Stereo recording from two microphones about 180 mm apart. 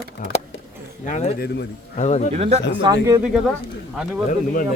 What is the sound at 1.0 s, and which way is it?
Speech, 40° left (ahead or behind).